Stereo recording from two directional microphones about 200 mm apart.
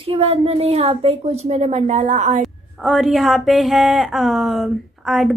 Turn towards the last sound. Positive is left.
turn(degrees=0)  # may be behind; listen again after turning